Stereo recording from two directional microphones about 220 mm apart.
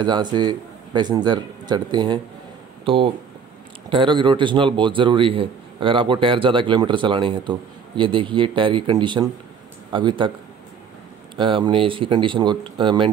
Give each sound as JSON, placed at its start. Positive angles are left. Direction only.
{"t": 0.0, "sound": "a man's voice", "side_deg": -20}
{"t": 11.3, "sound": "a man's voice", "side_deg": -20}